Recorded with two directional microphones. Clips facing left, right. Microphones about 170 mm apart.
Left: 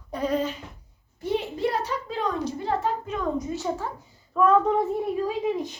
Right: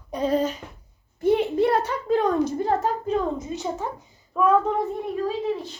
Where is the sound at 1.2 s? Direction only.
55° right (ahead or behind); by 3.4 s 30° right (ahead or behind).